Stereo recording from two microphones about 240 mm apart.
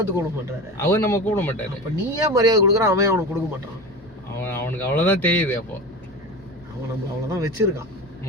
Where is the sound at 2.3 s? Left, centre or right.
Centre.